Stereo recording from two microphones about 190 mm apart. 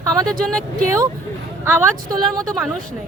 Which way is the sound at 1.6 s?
15° right (ahead or behind).